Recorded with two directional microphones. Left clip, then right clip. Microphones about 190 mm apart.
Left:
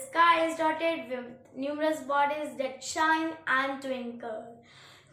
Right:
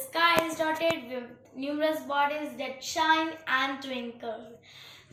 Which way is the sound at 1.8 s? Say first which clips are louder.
Even; 20° left (ahead or behind).